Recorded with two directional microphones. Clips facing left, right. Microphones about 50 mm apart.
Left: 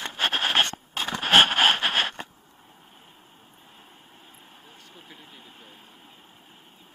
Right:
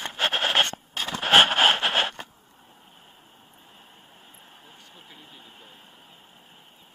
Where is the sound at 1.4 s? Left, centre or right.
Right.